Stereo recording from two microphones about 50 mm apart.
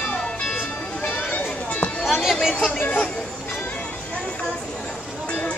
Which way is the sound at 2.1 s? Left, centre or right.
Centre.